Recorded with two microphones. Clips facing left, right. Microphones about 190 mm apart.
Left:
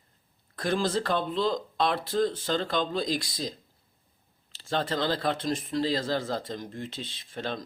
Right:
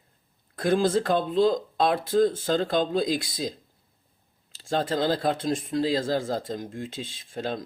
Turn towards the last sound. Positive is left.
turn(degrees=-50)  # may be behind; listen again after turning